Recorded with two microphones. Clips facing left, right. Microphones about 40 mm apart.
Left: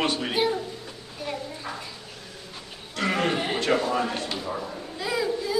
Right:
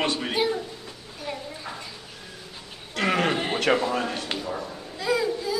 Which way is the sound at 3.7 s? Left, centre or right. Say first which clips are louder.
Even; centre.